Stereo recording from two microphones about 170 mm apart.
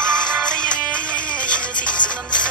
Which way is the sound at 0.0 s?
5° left (ahead or behind).